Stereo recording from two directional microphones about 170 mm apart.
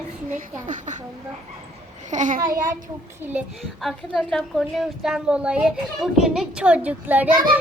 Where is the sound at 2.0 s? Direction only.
45° right (ahead or behind).